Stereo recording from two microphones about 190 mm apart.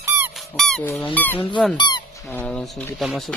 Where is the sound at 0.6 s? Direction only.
Centre (ahead or behind).